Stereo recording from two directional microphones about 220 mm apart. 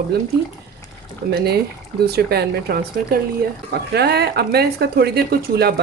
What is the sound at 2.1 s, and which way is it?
Speech, 45° right (ahead or behind).